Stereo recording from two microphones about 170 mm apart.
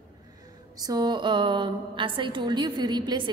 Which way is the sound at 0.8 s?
25° right (ahead or behind).